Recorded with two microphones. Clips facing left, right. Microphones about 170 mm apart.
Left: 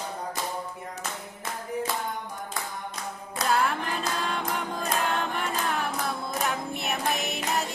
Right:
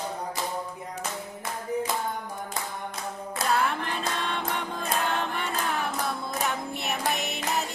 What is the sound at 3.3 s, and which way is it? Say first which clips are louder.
Music: left 1 dB; centre (ahead or behind).